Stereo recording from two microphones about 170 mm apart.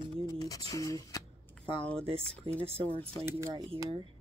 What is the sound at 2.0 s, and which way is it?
Speech, 35° right (ahead or behind).